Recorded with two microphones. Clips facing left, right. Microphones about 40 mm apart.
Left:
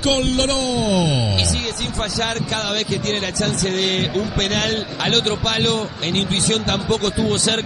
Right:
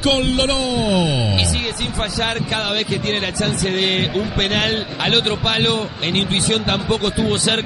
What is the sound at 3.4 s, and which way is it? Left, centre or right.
Speech, centre.